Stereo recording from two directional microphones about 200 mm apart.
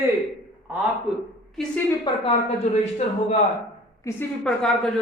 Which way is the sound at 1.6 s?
Centre (ahead or behind).